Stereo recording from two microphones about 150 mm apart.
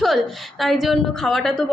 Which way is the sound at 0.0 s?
Centre (ahead or behind).